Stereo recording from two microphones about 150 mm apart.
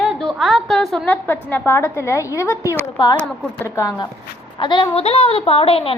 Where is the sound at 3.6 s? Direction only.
20° left (ahead or behind); by 5.9 s 40° left (ahead or behind).